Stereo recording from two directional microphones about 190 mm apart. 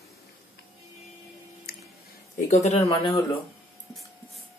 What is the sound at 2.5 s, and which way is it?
Speech, 35° left (ahead or behind).